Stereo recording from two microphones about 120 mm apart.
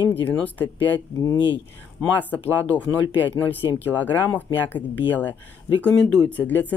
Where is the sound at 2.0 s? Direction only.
15° left (ahead or behind).